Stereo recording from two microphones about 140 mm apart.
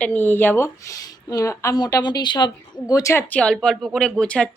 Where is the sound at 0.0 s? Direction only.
10° left (ahead or behind).